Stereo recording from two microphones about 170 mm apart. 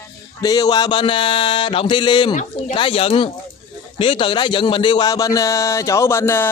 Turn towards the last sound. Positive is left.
turn(degrees=15)  # may be behind; listen again after turning